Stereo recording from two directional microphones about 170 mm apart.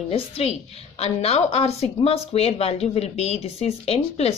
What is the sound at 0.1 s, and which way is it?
Speech, 35° left (ahead or behind).